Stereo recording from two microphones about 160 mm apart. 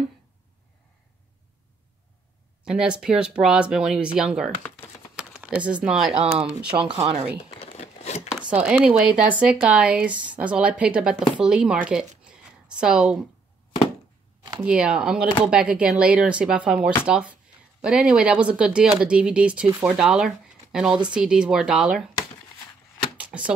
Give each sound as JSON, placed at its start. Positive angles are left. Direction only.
{"t": 2.6, "sound": "speech", "side_deg": -5}
{"t": 5.1, "sound": "a sound", "side_deg": -5}
{"t": 5.7, "sound": "speech", "side_deg": -5}
{"t": 6.8, "sound": "speech", "side_deg": -40}
{"t": 7.4, "sound": "crumpling", "side_deg": 40}
{"t": 8.4, "sound": "speech", "side_deg": -5}
{"t": 11.3, "sound": "a sound", "side_deg": -5}
{"t": 14.6, "sound": "speech", "side_deg": -5}
{"t": 23.1, "sound": "a sound", "side_deg": -5}